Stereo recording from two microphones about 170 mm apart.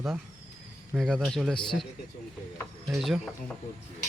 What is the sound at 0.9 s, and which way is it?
Speech, centre (ahead or behind).